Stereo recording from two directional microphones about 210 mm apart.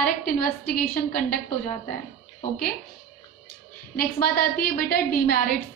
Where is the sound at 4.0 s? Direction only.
45° left (ahead or behind).